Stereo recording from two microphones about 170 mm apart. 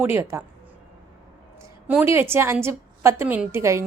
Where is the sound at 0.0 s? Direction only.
10° right (ahead or behind).